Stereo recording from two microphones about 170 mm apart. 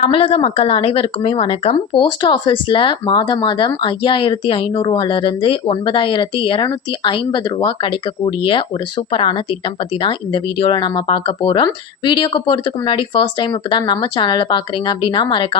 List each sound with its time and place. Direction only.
0.0 s speech: 35° left (ahead or behind)